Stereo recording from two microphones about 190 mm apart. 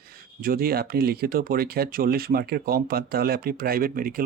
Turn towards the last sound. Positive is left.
turn(degrees=-50)  # may be behind; listen again after turning